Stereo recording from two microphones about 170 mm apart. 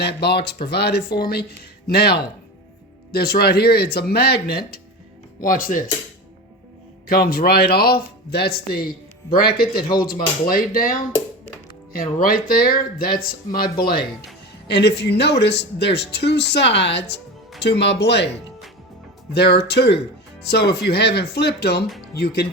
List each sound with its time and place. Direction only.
0.0 s speech: 75° left (ahead or behind)
5.4 s speech: 55° left (ahead or behind)
7.1 s speech: 60° left (ahead or behind)
11.9 s speech: 55° left (ahead or behind)
14.7 s speech: 85° left
19.3 s speech: 75° left (ahead or behind)